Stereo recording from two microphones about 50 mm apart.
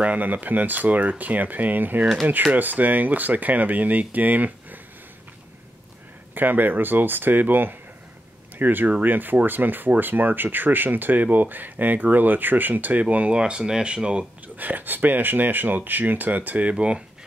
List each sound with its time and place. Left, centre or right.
0.0 s speech: right
6.3 s speech: right
13.4 s speech: centre
14.6 s speech: right